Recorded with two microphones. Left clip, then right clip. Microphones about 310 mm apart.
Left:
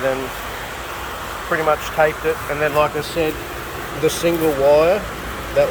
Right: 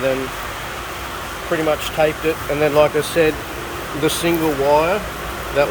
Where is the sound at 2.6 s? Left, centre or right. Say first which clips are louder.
Right 4 dB; centre.